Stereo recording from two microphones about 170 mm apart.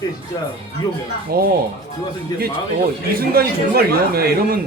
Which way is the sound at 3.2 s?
65° right (ahead or behind).